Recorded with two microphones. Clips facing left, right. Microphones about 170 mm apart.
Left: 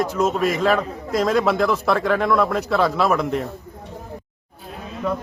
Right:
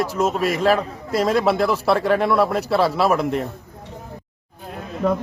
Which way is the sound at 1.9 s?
35° right (ahead or behind).